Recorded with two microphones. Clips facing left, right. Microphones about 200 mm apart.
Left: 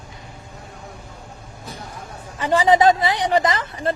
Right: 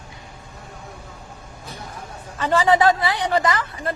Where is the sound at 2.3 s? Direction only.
15° left (ahead or behind).